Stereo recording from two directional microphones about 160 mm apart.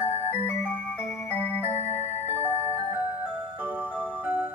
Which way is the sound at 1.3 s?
10° left (ahead or behind).